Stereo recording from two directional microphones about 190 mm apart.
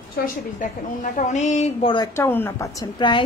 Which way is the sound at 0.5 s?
40° left (ahead or behind).